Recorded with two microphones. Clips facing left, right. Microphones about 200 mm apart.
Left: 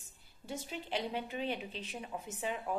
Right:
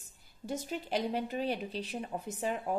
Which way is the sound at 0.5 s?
45° right (ahead or behind).